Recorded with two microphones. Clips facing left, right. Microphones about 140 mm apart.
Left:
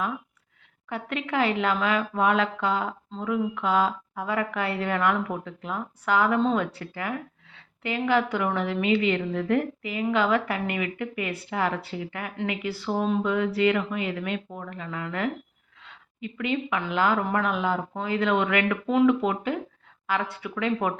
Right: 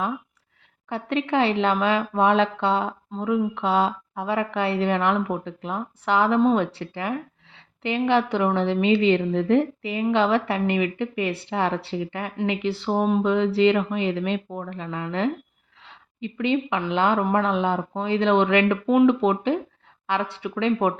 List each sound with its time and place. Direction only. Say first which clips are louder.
0.9 s a woman's voice: right 6 dB; 30° right (ahead or behind)